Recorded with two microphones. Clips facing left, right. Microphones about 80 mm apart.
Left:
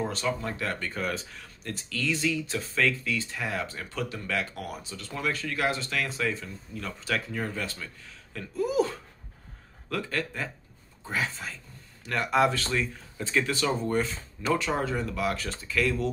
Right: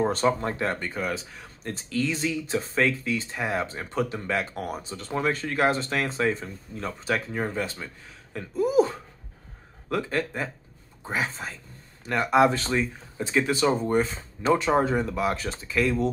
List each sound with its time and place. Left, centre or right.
0.0 s speech: right
0.9 s speech: centre
1.4 s speech: right